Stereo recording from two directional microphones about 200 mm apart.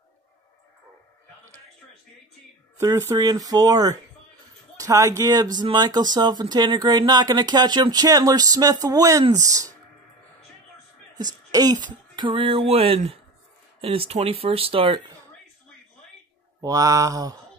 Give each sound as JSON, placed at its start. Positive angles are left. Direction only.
{"t": 2.8, "sound": "speech", "side_deg": -20}
{"t": 11.5, "sound": "speech", "side_deg": -20}
{"t": 16.6, "sound": "mantra", "side_deg": -15}